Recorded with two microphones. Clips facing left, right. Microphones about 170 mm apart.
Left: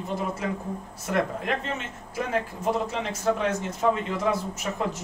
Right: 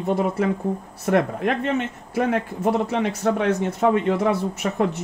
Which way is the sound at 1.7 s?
60° right (ahead or behind).